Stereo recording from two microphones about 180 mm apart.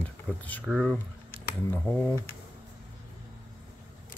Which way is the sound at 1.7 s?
10° left (ahead or behind).